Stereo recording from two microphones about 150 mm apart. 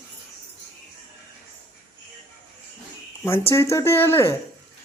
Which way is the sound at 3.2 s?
15° left (ahead or behind).